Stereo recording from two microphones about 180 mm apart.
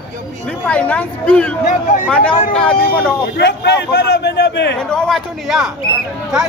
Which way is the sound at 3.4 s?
70° left (ahead or behind).